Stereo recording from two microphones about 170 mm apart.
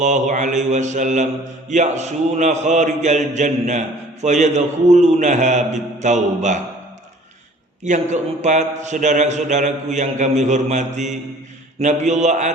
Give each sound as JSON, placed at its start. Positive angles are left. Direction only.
{"t": 0.0, "sound": "a man's voice", "side_deg": -45}
{"t": 8.1, "sound": "a man's voice", "side_deg": -45}